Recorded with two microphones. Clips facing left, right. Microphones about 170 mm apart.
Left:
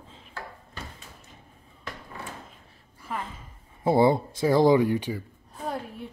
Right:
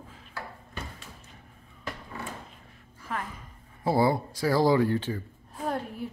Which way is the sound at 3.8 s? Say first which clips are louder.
Left 4 dB; 20° left (ahead or behind).